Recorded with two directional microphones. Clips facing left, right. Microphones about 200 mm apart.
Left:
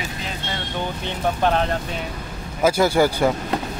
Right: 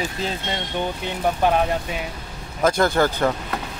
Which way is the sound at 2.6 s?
5° left (ahead or behind).